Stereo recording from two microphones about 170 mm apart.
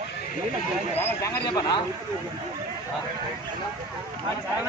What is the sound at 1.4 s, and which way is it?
Speech, 25° left (ahead or behind).